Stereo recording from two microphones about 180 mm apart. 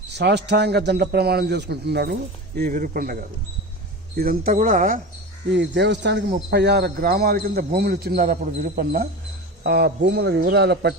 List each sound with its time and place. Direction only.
0.1 s a man's voice: 70° right (ahead or behind)
2.6 s speech: 50° right (ahead or behind)
5.5 s a man's voice: 75° right (ahead or behind)